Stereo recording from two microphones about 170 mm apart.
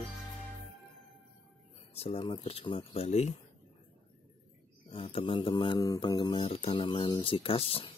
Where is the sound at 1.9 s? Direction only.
35° left (ahead or behind).